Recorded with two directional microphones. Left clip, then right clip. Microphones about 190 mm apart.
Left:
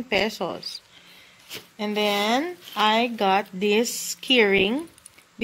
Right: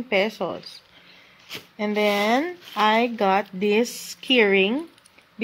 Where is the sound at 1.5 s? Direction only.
20° right (ahead or behind).